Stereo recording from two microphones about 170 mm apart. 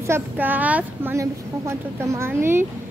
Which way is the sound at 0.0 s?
15° right (ahead or behind).